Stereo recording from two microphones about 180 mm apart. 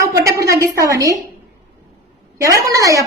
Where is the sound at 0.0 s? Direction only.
15° right (ahead or behind).